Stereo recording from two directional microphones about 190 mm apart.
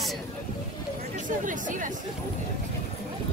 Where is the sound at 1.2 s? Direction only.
45° right (ahead or behind).